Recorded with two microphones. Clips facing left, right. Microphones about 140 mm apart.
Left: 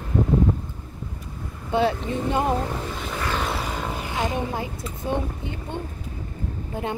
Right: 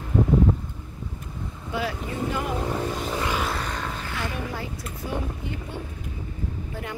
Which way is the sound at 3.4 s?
5° left (ahead or behind).